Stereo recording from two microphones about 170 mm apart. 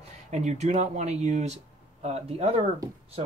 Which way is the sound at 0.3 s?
40° right (ahead or behind).